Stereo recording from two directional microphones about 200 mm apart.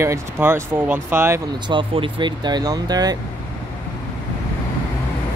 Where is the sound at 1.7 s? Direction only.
25° right (ahead or behind).